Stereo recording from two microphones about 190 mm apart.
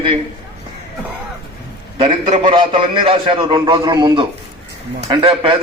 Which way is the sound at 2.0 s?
30° right (ahead or behind).